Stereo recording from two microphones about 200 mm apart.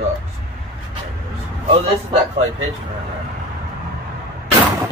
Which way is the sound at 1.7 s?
30° right (ahead or behind).